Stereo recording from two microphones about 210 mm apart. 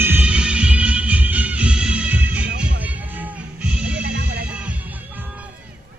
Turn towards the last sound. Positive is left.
turn(degrees=-50)  # may be behind; listen again after turning